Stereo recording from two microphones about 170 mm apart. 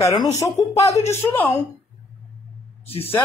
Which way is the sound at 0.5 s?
40° left (ahead or behind).